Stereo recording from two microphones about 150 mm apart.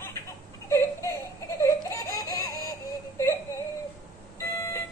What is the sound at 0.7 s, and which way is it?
Whimper, 20° left (ahead or behind).